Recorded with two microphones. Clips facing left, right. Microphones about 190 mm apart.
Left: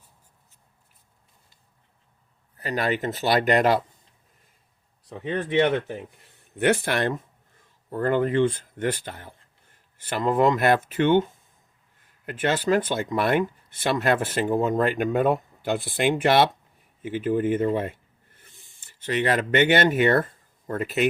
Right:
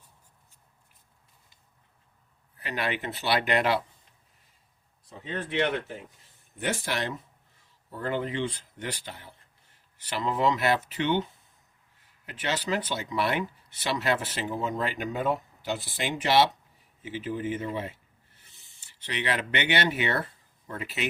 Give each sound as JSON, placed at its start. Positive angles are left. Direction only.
{"t": 2.6, "sound": "speech", "side_deg": 40}
{"t": 5.0, "sound": "speech", "side_deg": 65}
{"t": 17.7, "sound": "a sound", "side_deg": 50}